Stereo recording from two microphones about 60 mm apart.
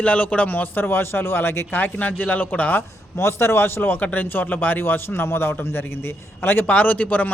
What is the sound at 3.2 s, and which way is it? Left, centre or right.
A man's voice, left.